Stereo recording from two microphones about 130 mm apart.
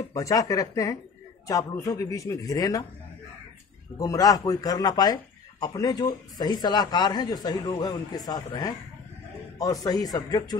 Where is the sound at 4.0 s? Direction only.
25° left (ahead or behind).